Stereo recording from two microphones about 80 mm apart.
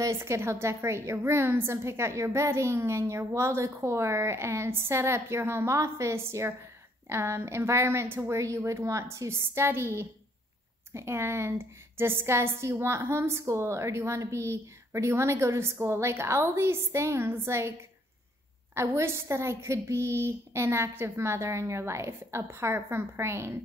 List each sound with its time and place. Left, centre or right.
0.0 s a woman's voice: right
18.8 s a woman's voice: right